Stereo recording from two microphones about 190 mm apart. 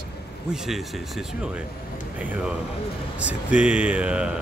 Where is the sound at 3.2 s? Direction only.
5° right (ahead or behind).